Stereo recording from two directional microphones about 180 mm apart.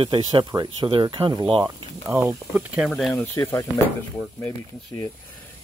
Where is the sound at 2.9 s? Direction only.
Centre (ahead or behind).